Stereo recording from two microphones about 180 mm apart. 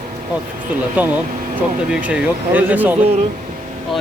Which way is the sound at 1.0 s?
10° right (ahead or behind).